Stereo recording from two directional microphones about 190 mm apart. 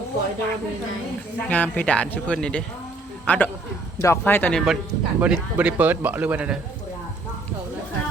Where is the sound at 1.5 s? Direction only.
10° left (ahead or behind).